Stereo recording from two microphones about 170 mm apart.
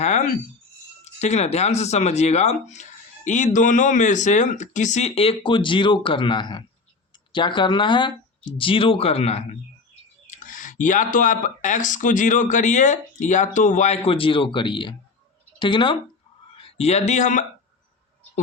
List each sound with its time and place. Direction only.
0.0 s a sound: 45° left (ahead or behind)
1.2 s speech: 40° left (ahead or behind)
10.2 s speech: 50° left (ahead or behind)